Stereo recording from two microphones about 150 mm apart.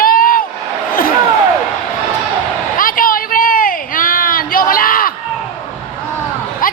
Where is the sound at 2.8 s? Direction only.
70° left (ahead or behind).